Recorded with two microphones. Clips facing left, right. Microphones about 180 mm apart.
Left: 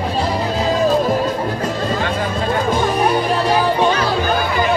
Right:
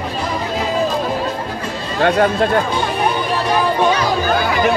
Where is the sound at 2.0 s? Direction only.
65° right (ahead or behind).